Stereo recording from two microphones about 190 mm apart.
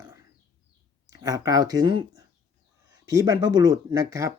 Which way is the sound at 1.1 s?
15° right (ahead or behind).